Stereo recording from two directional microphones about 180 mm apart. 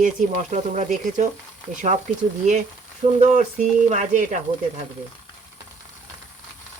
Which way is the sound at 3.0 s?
45° right (ahead or behind).